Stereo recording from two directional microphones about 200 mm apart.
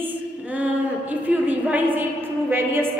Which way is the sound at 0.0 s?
5° right (ahead or behind).